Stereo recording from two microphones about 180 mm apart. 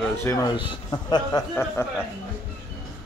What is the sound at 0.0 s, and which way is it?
A man's voice, 15° left (ahead or behind).